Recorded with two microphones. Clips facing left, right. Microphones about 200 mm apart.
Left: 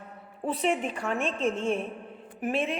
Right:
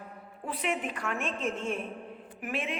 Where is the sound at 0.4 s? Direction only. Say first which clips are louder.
Left 5 dB; 30° left (ahead or behind).